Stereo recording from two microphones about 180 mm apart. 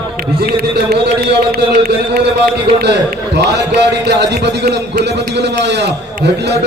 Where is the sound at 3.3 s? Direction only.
70° right (ahead or behind).